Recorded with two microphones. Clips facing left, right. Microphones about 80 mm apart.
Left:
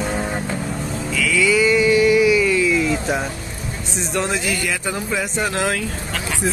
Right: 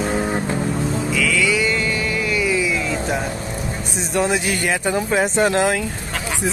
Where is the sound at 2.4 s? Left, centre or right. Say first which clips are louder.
Left 2 dB; centre.